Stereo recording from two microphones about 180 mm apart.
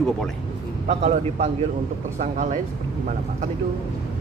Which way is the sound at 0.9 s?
40° right (ahead or behind).